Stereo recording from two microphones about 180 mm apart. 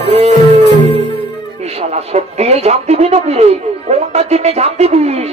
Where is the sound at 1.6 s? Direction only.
35° right (ahead or behind).